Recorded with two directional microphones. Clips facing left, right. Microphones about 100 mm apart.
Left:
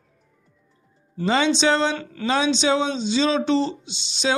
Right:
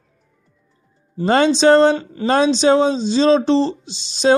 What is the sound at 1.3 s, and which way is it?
Speech, 45° right (ahead or behind).